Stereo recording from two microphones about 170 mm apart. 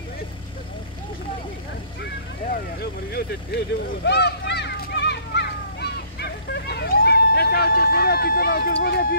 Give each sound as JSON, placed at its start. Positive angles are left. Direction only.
{"t": 2.4, "sound": "vehicle", "side_deg": 60}